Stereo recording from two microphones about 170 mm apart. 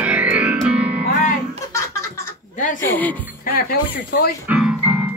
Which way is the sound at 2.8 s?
10° left (ahead or behind).